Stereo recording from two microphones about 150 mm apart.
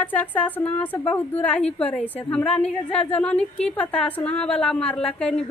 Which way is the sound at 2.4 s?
40° left (ahead or behind).